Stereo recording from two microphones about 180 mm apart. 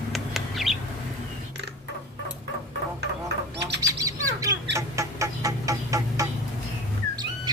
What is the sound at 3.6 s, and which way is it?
Bird, 70° right (ahead or behind).